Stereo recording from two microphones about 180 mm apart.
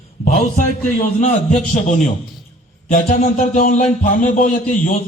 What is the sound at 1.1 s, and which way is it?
A man's voice, 40° left (ahead or behind).